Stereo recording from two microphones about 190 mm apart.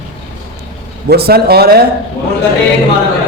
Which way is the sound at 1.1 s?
55° right (ahead or behind).